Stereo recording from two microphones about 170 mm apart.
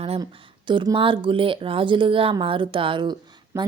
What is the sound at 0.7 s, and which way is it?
Speech, 30° right (ahead or behind).